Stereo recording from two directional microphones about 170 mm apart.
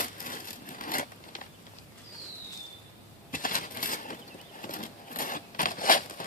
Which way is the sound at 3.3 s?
55° left (ahead or behind).